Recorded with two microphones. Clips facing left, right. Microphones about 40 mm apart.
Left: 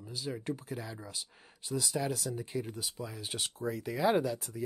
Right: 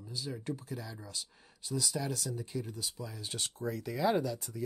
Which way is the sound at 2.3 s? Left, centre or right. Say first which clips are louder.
Left 2 dB; left.